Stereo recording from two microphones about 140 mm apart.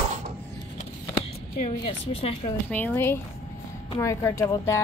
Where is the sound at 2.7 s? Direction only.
10° left (ahead or behind).